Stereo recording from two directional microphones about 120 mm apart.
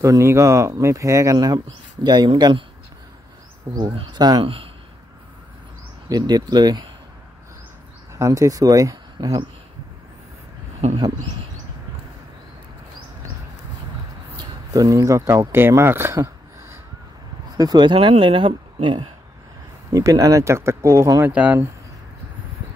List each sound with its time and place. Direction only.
0.0 s speech: 25° right (ahead or behind); by 2.6 s 40° right (ahead or behind)
3.8 s speech: 40° right (ahead or behind)
6.0 s speech: 35° right (ahead or behind)
8.1 s speech: 25° right (ahead or behind)
14.3 s speech: 35° right (ahead or behind)
17.6 s speech: 35° right (ahead or behind)
19.9 s speech: 30° right (ahead or behind)
21.4 s speech: 10° right (ahead or behind)